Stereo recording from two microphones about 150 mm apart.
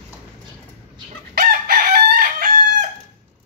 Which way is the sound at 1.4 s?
80° right.